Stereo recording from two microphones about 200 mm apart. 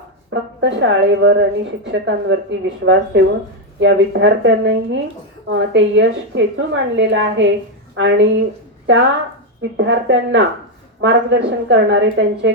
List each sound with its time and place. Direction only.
0.3 s a woman's voice: 65° right (ahead or behind)
9.6 s speech: 65° right (ahead or behind)